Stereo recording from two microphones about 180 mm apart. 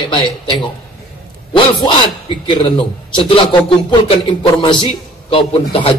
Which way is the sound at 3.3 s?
30° left (ahead or behind).